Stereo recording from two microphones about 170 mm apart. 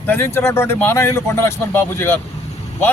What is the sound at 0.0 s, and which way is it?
Speech, 10° left (ahead or behind).